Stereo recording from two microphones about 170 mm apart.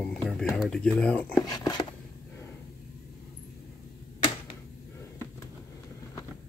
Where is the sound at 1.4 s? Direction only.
20° left (ahead or behind).